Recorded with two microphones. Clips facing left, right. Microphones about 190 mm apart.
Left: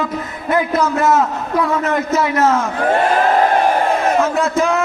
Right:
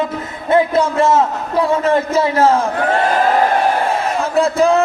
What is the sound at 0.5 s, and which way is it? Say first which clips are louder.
A man's voice: right 3 dB; 30° right (ahead or behind).